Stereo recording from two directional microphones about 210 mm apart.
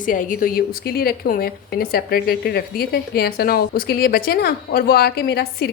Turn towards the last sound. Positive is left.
turn(degrees=50)  # may be behind; listen again after turning